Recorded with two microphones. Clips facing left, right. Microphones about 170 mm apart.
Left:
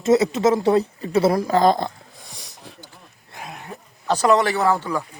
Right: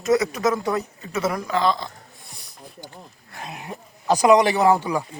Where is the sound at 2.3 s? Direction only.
90° left.